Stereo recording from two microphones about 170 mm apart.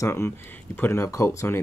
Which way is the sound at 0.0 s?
15° left (ahead or behind).